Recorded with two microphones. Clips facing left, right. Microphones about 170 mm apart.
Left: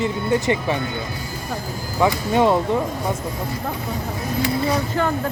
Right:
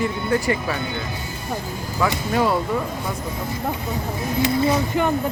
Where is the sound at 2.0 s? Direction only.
25° left (ahead or behind).